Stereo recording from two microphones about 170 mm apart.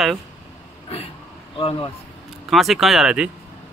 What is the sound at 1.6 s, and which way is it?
Speech, 30° left (ahead or behind).